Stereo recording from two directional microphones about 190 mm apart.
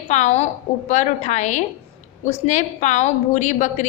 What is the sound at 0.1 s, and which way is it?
A woman's voice, 35° left (ahead or behind).